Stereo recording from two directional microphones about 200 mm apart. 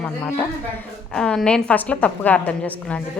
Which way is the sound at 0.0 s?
10° left (ahead or behind).